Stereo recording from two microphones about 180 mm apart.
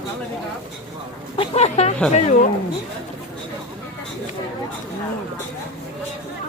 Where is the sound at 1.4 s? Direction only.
35° left (ahead or behind).